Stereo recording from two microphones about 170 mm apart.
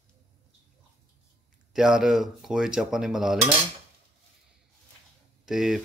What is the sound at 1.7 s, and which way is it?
Speech, 5° right (ahead or behind).